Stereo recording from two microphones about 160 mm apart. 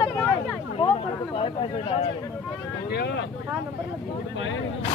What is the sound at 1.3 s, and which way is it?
Speech, 35° left (ahead or behind).